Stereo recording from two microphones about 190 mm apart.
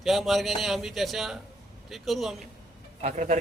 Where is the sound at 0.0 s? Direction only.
Centre (ahead or behind).